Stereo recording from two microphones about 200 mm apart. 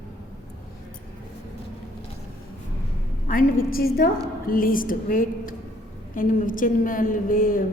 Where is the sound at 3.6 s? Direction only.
45° left (ahead or behind).